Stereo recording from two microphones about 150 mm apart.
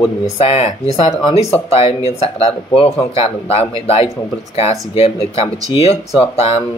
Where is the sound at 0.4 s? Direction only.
45° left (ahead or behind).